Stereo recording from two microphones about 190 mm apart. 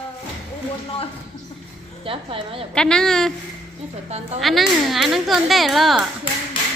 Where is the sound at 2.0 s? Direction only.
30° right (ahead or behind).